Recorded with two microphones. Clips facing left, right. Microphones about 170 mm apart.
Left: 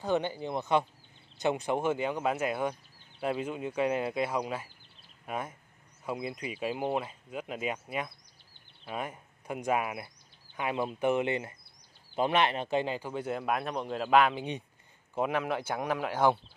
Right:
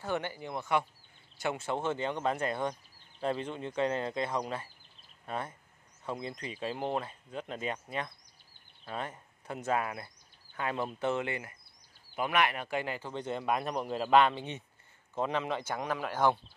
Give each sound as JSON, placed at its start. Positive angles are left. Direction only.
{"t": 0.0, "sound": "speech", "side_deg": 20}
{"t": 13.1, "sound": "a man's voice", "side_deg": 5}